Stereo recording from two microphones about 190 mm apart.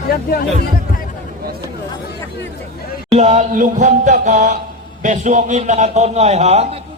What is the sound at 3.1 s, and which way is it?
A man's voice, 35° right (ahead or behind).